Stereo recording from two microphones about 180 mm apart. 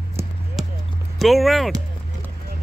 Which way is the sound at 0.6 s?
Centre (ahead or behind).